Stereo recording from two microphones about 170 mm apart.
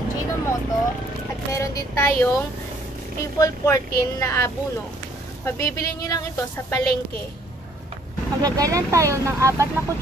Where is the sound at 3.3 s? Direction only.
20° left (ahead or behind).